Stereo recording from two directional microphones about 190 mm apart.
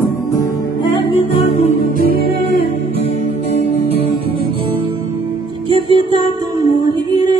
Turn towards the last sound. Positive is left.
turn(degrees=-25)  # may be behind; listen again after turning